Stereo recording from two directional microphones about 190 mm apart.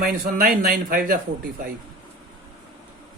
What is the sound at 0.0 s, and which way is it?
Speech, 50° right (ahead or behind).